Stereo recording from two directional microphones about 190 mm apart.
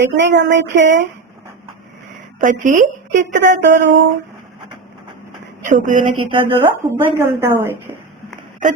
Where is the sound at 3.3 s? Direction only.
70° right (ahead or behind).